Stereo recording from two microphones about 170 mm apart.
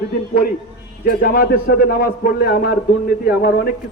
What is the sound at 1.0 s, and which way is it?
A man's voice, 65° left (ahead or behind).